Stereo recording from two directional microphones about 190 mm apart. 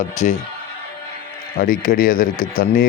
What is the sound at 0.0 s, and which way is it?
Speech, 40° left (ahead or behind).